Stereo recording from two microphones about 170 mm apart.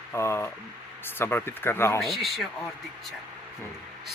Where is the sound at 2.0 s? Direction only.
Centre (ahead or behind).